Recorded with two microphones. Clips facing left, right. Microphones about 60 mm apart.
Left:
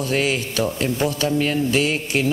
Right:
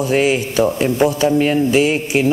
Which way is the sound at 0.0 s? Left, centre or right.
Centre.